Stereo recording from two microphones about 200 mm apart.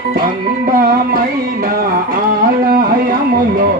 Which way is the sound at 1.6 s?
45° right (ahead or behind).